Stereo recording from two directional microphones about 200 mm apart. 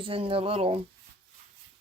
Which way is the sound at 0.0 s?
25° right (ahead or behind).